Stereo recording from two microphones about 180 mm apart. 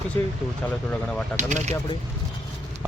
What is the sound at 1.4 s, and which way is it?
Speech, 40° right (ahead or behind).